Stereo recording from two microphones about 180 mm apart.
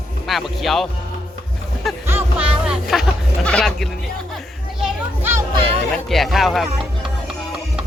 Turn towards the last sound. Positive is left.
turn(degrees=0)  # may be behind; listen again after turning